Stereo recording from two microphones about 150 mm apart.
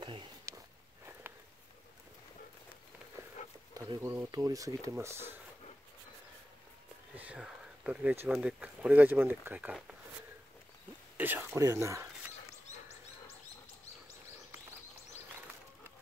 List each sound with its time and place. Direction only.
0.5 s walk: 20° right (ahead or behind)
3.7 s speech: 20° right (ahead or behind)
7.2 s speech: 5° right (ahead or behind)
11.1 s speech: 15° right (ahead or behind)